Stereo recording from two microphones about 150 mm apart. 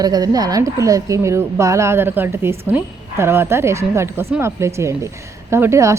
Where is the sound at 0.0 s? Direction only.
25° right (ahead or behind).